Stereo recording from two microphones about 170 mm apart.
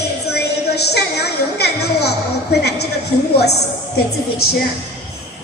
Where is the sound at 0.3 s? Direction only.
75° left (ahead or behind).